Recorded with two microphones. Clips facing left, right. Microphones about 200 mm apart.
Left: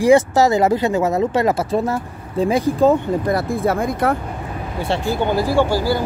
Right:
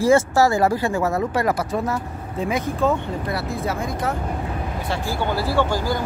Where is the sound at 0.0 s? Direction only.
20° left (ahead or behind); by 4.1 s 55° left (ahead or behind).